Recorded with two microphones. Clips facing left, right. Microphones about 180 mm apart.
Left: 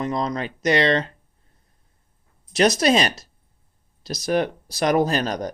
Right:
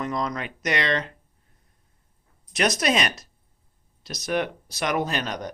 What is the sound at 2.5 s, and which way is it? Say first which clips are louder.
Speech: left 5 dB; 30° left (ahead or behind).